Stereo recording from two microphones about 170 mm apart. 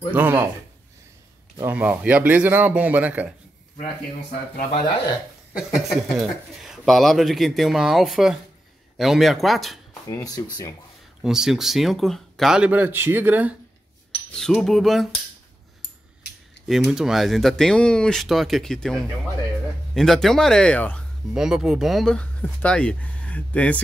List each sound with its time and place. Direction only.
0.1 s speech: 10° right (ahead or behind)
1.6 s speech: 10° right (ahead or behind)
5.6 s speech: centre (ahead or behind)
10.0 s speech: 20° left (ahead or behind)
11.2 s speech: 5° right (ahead or behind)
14.3 s speech: 5° left (ahead or behind)
16.6 s speech: centre (ahead or behind)
21.3 s speech: 5° right (ahead or behind)